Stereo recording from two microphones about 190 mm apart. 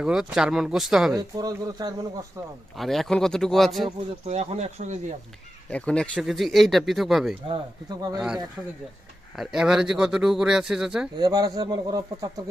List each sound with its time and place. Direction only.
0.0 s a man's voice: 5° right (ahead or behind)
1.1 s speech: 20° right (ahead or behind)
2.7 s a man's voice: centre (ahead or behind)
4.3 s speech: 35° right (ahead or behind)
5.7 s a man's voice: 5° left (ahead or behind)
7.4 s speech: 25° right (ahead or behind)
9.3 s a man's voice: centre (ahead or behind)
11.2 s speech: 20° right (ahead or behind)